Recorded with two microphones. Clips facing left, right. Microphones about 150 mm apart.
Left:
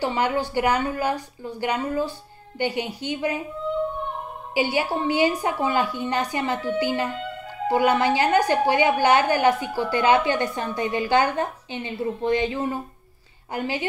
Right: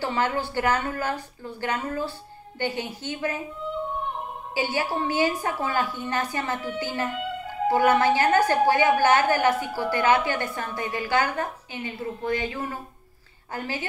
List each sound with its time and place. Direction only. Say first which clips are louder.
0.0 s a woman's voice: left 3 dB; 15° left (ahead or behind)
4.6 s a woman's voice: left 3 dB; 15° left (ahead or behind)